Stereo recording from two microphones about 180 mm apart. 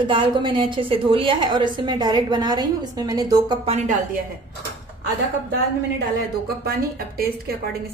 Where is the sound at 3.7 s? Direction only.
45° right (ahead or behind).